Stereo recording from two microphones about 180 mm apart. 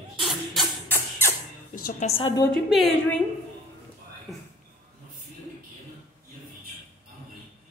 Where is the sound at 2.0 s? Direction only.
40° left (ahead or behind).